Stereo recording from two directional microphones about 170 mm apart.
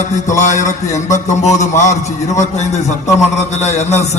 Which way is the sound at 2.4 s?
40° left (ahead or behind).